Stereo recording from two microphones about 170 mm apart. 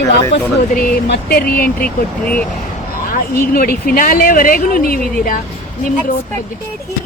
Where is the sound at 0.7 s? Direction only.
60° left (ahead or behind).